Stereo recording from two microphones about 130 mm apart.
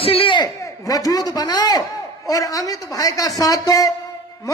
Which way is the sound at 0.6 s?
25° left (ahead or behind).